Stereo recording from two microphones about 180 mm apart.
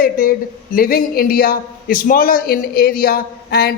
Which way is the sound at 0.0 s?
50° left (ahead or behind).